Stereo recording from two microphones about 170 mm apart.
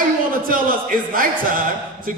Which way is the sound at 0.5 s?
55° right (ahead or behind).